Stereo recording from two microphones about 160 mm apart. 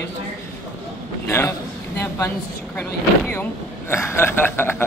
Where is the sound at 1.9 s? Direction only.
15° left (ahead or behind).